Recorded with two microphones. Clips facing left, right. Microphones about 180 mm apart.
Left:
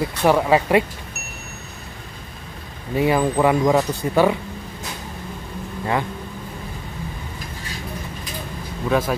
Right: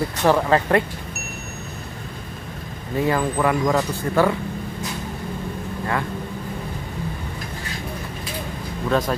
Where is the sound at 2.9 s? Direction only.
15° left (ahead or behind).